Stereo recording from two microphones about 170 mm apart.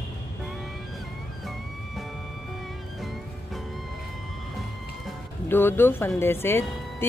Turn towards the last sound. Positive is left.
turn(degrees=15)  # may be behind; listen again after turning